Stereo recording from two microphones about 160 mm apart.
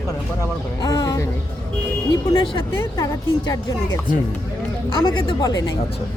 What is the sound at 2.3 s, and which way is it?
Speech, 30° left (ahead or behind).